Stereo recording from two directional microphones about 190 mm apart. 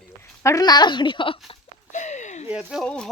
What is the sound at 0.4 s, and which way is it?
Speech, 20° left (ahead or behind).